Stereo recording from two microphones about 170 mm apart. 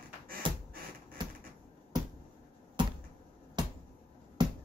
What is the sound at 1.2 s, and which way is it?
Typewriter, 25° right (ahead or behind).